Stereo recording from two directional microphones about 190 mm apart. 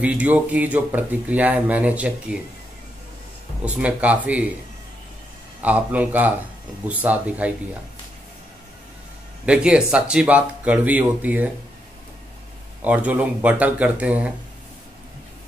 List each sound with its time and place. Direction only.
0.0 s speech: 10° right (ahead or behind)
3.6 s speech: 5° right (ahead or behind)
5.6 s speech: 5° right (ahead or behind)
9.5 s speech: 5° right (ahead or behind)
12.8 s speech: 10° right (ahead or behind)